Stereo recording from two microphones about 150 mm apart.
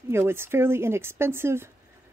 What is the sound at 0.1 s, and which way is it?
Speech, 15° right (ahead or behind).